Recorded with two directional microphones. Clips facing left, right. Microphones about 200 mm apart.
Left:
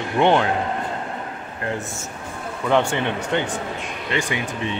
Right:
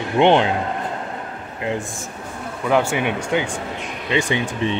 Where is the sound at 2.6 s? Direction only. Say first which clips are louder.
Right 1 dB; 5° right (ahead or behind).